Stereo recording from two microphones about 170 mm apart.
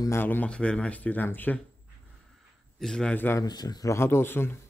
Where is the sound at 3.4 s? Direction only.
25° left (ahead or behind).